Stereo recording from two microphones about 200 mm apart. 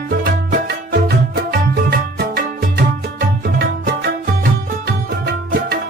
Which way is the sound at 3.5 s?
50° right (ahead or behind).